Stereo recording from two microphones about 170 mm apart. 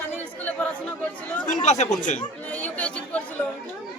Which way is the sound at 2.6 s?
10° left (ahead or behind).